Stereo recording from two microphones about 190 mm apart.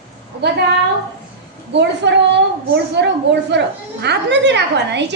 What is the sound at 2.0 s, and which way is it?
A woman's voice, 65° right (ahead or behind).